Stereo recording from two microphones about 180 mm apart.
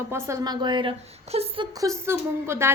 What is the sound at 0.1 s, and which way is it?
Female singing, 15° right (ahead or behind).